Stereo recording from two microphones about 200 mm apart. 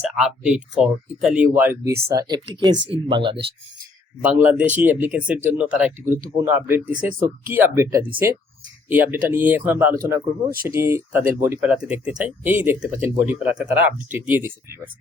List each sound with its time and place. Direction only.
0.0 s speech: 5° right (ahead or behind); by 3.4 s 25° right (ahead or behind)
4.2 s speech: 5° right (ahead or behind)